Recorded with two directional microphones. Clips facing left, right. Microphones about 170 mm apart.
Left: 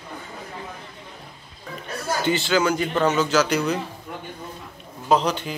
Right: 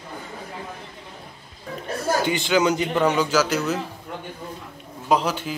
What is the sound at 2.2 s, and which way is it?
Speech, 15° right (ahead or behind).